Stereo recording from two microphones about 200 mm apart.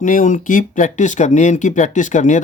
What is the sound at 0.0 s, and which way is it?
Speech, 40° left (ahead or behind).